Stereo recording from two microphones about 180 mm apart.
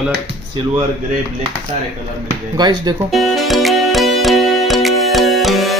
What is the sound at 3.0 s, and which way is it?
Music, centre (ahead or behind).